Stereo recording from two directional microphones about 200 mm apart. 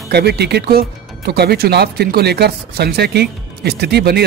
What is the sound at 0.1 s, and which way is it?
Speech, 55° right (ahead or behind).